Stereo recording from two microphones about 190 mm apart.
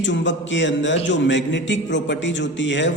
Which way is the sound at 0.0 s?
70° left (ahead or behind).